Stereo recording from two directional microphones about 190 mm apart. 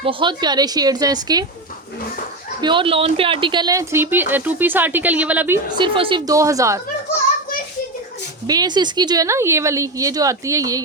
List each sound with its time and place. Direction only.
0.0 s a woman's voice: 25° right (ahead or behind)
2.6 s speech: 25° right (ahead or behind); by 5.5 s 10° right (ahead or behind)
5.7 s a woman's voice: 25° right (ahead or behind)
8.4 s speech: 20° right (ahead or behind)